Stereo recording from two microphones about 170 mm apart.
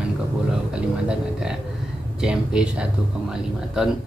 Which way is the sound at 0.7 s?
5° right (ahead or behind).